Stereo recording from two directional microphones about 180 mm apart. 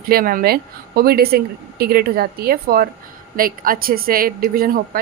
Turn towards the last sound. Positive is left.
turn(degrees=-55)  # may be behind; listen again after turning